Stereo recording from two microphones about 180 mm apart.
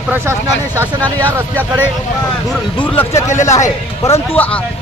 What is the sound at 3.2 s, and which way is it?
Speech, 40° left (ahead or behind).